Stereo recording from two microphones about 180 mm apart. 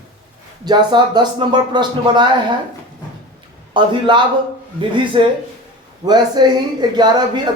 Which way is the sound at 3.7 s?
25° right (ahead or behind).